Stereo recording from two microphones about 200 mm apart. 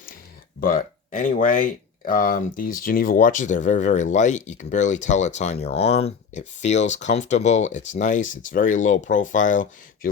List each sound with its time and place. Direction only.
0.6 s speech: 45° left (ahead or behind)